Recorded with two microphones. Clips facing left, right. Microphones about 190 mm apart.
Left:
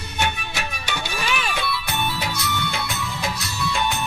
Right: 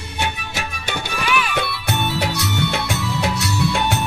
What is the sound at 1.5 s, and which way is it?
Music, 65° right (ahead or behind).